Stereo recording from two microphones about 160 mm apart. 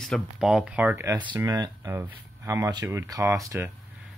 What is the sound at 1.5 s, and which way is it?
Speech, 25° right (ahead or behind).